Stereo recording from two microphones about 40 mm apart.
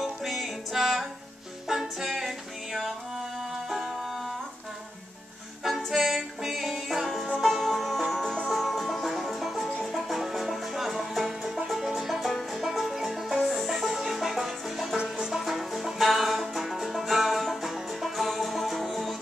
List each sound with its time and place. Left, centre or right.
0.0 s music: centre
5.9 s music: centre
12.3 s music: centre
12.6 s music: centre
15.0 s music: centre
15.3 s music: centre